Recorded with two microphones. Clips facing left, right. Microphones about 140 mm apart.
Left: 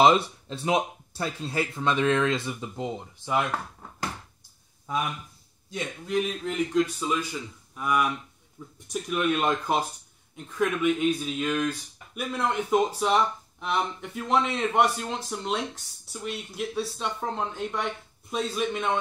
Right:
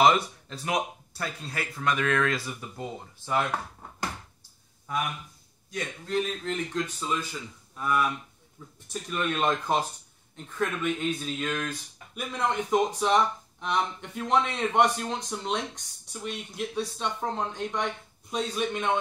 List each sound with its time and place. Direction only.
0.0 s speech: 30° left (ahead or behind)
6.0 s speech: 10° left (ahead or behind)